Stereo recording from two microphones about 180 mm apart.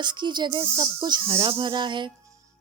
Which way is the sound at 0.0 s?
25° right (ahead or behind).